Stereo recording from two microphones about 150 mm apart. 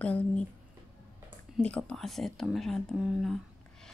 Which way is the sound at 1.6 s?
5° left (ahead or behind).